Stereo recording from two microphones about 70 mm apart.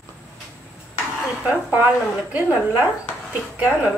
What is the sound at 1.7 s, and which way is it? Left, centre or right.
A woman's voice, right.